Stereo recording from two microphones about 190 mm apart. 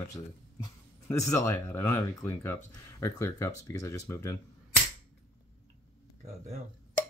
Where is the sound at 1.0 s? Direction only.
15° left (ahead or behind).